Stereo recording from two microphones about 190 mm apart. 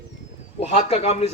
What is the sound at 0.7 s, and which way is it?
Speech, 35° left (ahead or behind).